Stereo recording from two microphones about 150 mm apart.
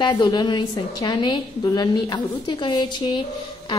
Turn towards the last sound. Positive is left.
turn(degrees=30)  # may be behind; listen again after turning